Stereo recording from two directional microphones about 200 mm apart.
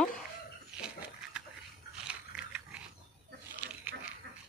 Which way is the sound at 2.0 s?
5° right (ahead or behind).